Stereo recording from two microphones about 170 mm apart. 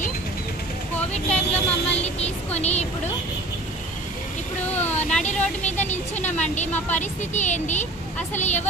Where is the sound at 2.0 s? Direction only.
40° left (ahead or behind).